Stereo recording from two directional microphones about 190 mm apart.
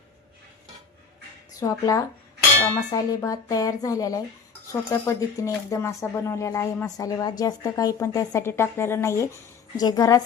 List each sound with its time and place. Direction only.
1.5 s a woman's voice: 20° left (ahead or behind)